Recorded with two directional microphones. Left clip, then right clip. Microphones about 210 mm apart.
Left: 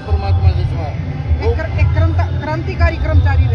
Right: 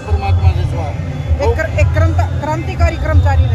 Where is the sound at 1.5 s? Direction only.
25° right (ahead or behind).